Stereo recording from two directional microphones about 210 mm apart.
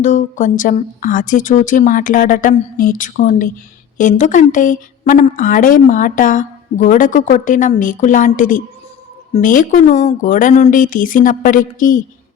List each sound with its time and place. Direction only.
0.0 s speech: 35° left (ahead or behind)